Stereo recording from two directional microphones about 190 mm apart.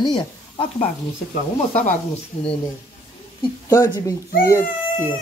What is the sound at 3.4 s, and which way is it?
Speech, 20° left (ahead or behind).